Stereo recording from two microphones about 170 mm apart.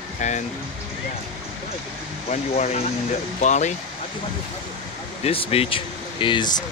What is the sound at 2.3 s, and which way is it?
Speech, 40° left (ahead or behind).